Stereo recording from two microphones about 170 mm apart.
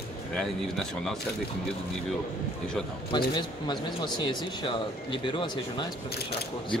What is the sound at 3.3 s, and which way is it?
Speech, 25° left (ahead or behind).